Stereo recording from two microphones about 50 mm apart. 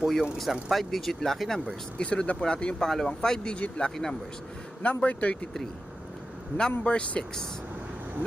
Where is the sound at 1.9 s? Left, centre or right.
Centre.